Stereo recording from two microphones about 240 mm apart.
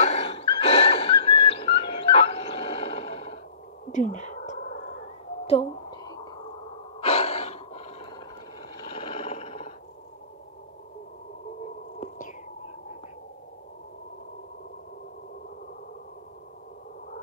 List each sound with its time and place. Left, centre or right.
0.0 s a sound: left
3.9 s cat: left
7.0 s gasp: left
8.7 s roar: left